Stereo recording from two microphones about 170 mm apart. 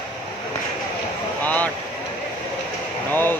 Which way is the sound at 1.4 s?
10° left (ahead or behind).